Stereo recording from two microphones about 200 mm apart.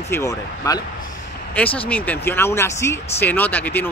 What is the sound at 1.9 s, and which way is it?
Speech, 10° left (ahead or behind).